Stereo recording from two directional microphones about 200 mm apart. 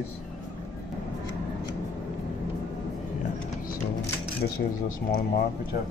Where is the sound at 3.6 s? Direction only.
50° left (ahead or behind).